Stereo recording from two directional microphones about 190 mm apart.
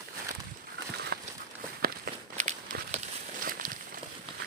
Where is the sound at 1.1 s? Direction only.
55° right (ahead or behind).